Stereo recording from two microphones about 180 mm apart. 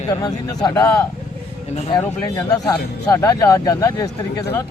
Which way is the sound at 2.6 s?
15° left (ahead or behind).